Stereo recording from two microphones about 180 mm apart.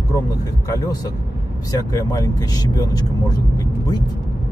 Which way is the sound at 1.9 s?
20° left (ahead or behind).